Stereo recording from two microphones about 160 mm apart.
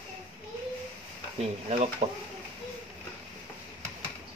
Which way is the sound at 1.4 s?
40° right (ahead or behind).